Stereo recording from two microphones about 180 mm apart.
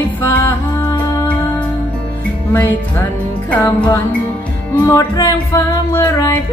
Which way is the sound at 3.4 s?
15° left (ahead or behind).